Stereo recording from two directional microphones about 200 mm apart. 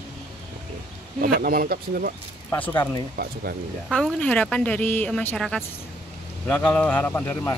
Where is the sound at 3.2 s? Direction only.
50° right (ahead or behind).